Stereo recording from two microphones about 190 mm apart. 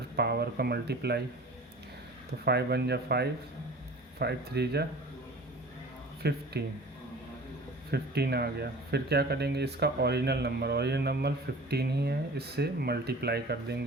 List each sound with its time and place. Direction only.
0.2 s speech: 60° right (ahead or behind)
2.4 s speech: 60° right (ahead or behind)
6.2 s speech: 60° right (ahead or behind)
7.9 s speech: 60° right (ahead or behind)